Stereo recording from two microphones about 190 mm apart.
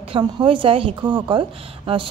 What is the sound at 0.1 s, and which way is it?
Speech, 25° right (ahead or behind).